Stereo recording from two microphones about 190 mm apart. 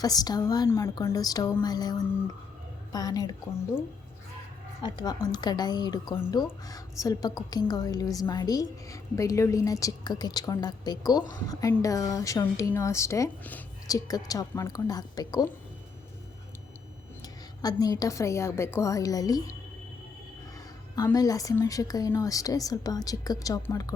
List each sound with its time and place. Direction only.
0.0 s a woman's voice: 20° left (ahead or behind)
4.8 s a woman's voice: 25° left (ahead or behind)
17.2 s a woman's voice: 20° left (ahead or behind)
20.9 s a woman's voice: 20° left (ahead or behind)